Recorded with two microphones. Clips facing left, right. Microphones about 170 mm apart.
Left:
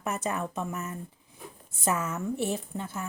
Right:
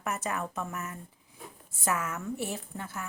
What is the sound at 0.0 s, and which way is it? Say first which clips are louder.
A woman's voice: left 2 dB; 20° left (ahead or behind).